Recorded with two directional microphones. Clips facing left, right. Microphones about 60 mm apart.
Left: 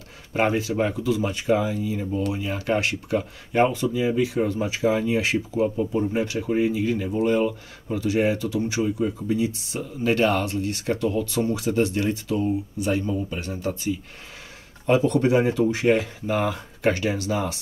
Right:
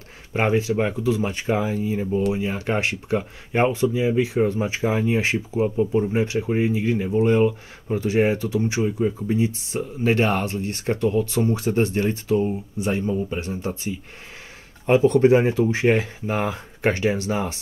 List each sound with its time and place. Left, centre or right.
0.3 s speech: right
14.9 s speech: right